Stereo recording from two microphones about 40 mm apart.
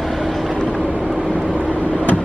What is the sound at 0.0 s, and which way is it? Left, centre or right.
Vehicle, centre.